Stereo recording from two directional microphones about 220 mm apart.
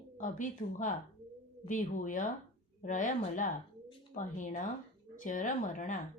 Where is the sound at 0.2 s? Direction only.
35° left (ahead or behind).